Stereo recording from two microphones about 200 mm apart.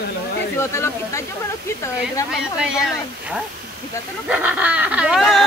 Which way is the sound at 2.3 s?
Centre (ahead or behind).